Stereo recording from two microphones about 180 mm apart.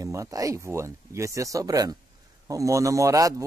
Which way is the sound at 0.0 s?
20° right (ahead or behind).